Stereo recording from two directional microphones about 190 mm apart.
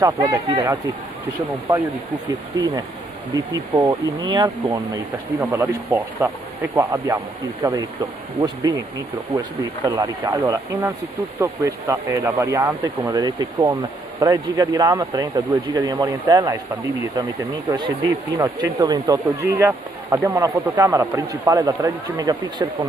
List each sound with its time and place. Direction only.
0.0 s speech: 20° right (ahead or behind)
1.7 s speech: 15° right (ahead or behind)
3.3 s speech: 10° right (ahead or behind)
4.2 s speech: 25° right (ahead or behind)
5.4 s speech: 10° right (ahead or behind)